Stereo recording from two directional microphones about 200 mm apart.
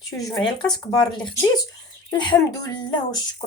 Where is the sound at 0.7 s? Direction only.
20° left (ahead or behind).